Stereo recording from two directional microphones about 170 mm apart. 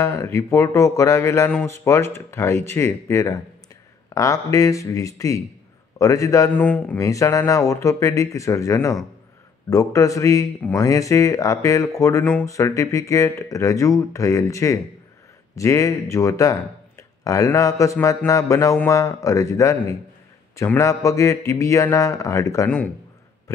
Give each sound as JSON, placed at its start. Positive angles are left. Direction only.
{"t": 0.0, "sound": "a man's voice", "side_deg": 15}